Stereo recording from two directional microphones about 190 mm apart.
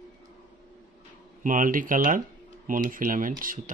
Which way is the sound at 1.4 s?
45° right (ahead or behind).